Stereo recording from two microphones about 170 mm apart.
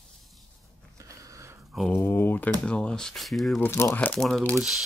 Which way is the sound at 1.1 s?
20° right (ahead or behind).